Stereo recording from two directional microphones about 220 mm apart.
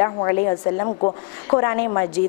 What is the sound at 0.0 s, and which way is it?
A woman's voice, 20° left (ahead or behind).